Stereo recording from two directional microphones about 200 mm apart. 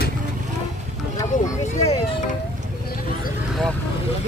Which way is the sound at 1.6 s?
35° left (ahead or behind).